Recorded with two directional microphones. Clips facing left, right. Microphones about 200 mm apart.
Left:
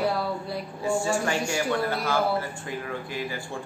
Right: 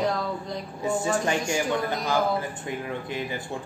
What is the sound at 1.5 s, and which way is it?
Speech, 15° right (ahead or behind).